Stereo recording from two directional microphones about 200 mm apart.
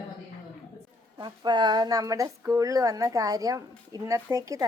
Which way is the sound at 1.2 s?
20° right (ahead or behind).